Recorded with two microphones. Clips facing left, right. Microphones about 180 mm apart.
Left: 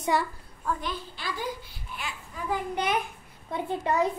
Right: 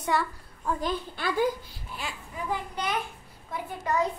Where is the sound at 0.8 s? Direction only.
50° right (ahead or behind).